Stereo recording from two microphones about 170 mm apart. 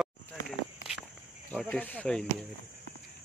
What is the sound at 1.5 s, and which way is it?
Speech, 10° left (ahead or behind).